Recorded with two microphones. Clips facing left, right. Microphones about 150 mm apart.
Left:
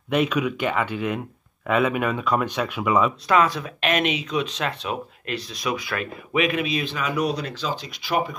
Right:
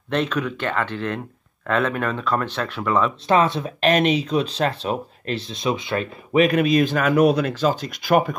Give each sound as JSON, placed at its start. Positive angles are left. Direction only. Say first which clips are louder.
{"t": 0.1, "sound": "speech", "louder": "left 1 dB", "side_deg": 10}
{"t": 3.3, "sound": "speech", "louder": "right 2 dB", "side_deg": -30}